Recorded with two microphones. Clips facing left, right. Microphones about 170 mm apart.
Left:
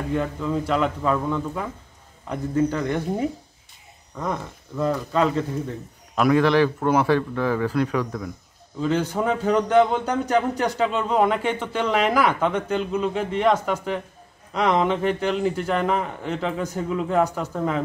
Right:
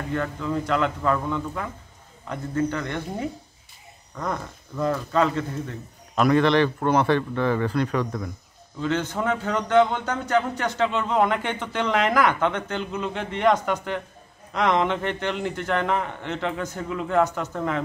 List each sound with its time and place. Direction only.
0.1 s speech: 10° left (ahead or behind)
4.2 s speech: 5° left (ahead or behind)
9.1 s speech: 15° left (ahead or behind)